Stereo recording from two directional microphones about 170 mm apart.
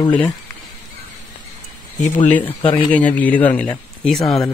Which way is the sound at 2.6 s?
30° left (ahead or behind).